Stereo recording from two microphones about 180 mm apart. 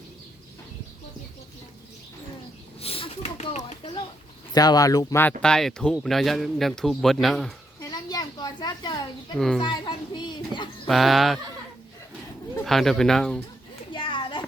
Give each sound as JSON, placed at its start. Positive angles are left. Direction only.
{"t": 2.8, "sound": "a sound", "side_deg": 30}
{"t": 4.5, "sound": "speech", "side_deg": 20}
{"t": 5.4, "sound": "speech", "side_deg": 5}
{"t": 7.8, "sound": "a sound", "side_deg": 20}
{"t": 9.6, "sound": "a child's voice", "side_deg": 25}
{"t": 10.8, "sound": "speech", "side_deg": 0}
{"t": 12.6, "sound": "speech", "side_deg": 0}
{"t": 13.9, "sound": "children playing", "side_deg": 25}